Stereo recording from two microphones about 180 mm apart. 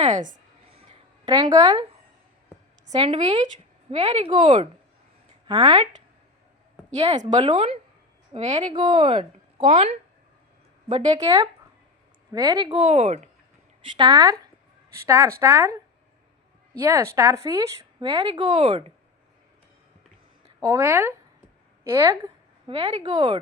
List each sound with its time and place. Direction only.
0.0 s a sound: 45° right (ahead or behind); by 1.8 s 20° right (ahead or behind)
2.8 s a woman's voice: 35° right (ahead or behind)
6.9 s speech: 35° right (ahead or behind)
8.7 s a woman's voice: 25° right (ahead or behind)
12.8 s speech: 35° right (ahead or behind)
13.9 s a woman's voice: 25° right (ahead or behind)
20.6 s speech: 15° right (ahead or behind)
21.8 s a sound: 15° right (ahead or behind)
22.7 s a woman's voice: 35° right (ahead or behind)